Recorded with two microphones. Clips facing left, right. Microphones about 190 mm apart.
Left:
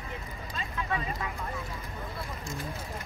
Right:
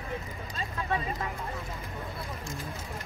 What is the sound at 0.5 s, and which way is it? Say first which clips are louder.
Vehicle: right 1 dB; 35° right (ahead or behind).